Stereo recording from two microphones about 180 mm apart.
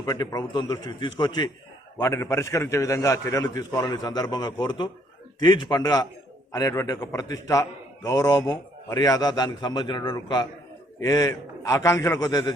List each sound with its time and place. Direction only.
0.0 s a man's voice: 20° left (ahead or behind)